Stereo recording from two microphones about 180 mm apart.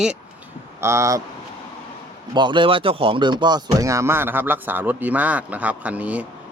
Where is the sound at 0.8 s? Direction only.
15° right (ahead or behind).